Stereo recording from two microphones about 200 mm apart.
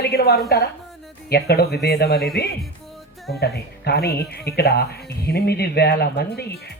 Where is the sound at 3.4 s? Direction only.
55° left (ahead or behind).